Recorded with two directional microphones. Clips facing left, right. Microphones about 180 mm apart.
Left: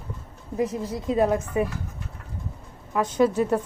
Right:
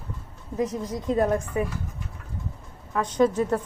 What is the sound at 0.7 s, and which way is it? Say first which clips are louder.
Speech: even; 10° left (ahead or behind).